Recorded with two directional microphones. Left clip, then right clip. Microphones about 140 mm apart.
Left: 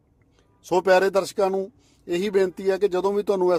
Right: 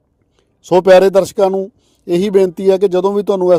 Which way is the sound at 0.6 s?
35° right (ahead or behind).